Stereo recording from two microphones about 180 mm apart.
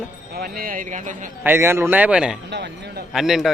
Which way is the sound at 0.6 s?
50° right (ahead or behind).